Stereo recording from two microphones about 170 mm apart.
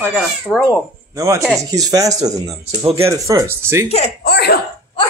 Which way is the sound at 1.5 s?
20° right (ahead or behind).